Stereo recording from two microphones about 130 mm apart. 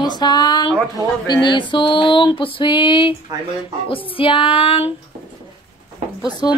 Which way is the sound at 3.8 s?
45° left (ahead or behind).